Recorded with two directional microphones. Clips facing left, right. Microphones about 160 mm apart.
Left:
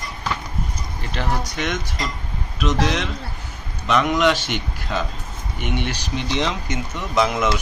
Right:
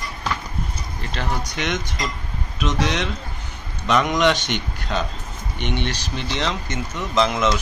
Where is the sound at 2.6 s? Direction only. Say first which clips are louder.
Left 1 dB; centre (ahead or behind).